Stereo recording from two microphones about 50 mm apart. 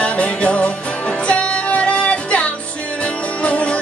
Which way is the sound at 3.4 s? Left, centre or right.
Left.